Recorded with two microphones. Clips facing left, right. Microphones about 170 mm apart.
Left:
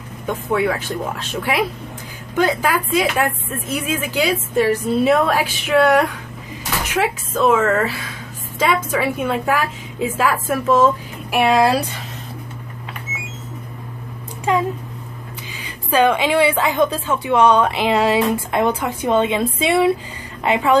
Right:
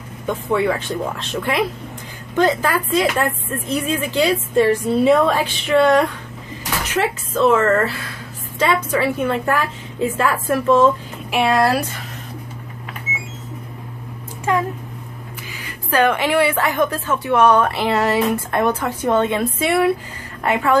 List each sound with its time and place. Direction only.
0.3 s a woman's voice: 5° left (ahead or behind)
15.9 s a woman's voice: 15° left (ahead or behind)